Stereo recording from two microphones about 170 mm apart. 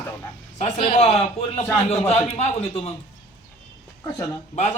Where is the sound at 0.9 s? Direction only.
40° left (ahead or behind).